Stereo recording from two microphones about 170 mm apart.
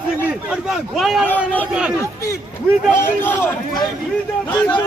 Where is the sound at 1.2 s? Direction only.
10° left (ahead or behind).